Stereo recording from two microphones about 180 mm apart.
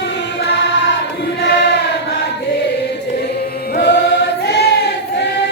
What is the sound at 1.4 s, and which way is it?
Choir, 70° left (ahead or behind).